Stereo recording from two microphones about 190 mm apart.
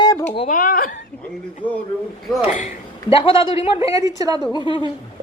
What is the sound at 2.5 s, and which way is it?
Speech, 35° left (ahead or behind).